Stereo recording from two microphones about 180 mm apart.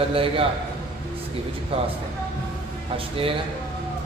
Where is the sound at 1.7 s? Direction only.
30° right (ahead or behind).